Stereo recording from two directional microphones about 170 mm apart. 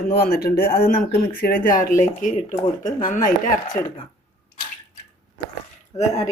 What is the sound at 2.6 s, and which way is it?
Speech, 25° left (ahead or behind).